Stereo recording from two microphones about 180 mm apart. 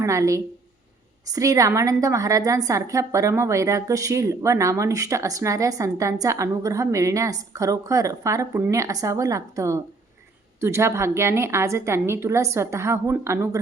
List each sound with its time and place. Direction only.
0.0 s a woman's voice: 15° right (ahead or behind)